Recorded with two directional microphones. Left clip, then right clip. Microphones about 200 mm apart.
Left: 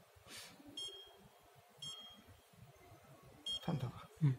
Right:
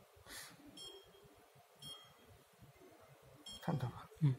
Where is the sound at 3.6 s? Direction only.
20° right (ahead or behind).